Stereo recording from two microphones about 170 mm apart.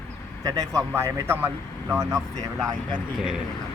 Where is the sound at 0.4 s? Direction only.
15° right (ahead or behind).